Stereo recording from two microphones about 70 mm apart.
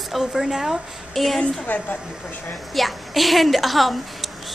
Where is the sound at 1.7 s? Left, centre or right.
Left.